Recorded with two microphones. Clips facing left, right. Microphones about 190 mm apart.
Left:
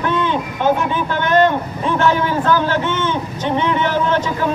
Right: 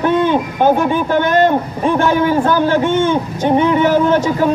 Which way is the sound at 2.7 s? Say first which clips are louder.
Right 6 dB; 50° right (ahead or behind).